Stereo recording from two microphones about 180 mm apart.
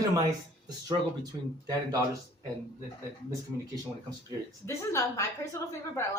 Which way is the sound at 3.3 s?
20° right (ahead or behind).